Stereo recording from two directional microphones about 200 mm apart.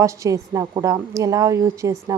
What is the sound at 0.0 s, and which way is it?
A woman's voice, 15° right (ahead or behind).